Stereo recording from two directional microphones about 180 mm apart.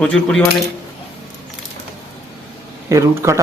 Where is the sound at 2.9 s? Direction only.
15° right (ahead or behind).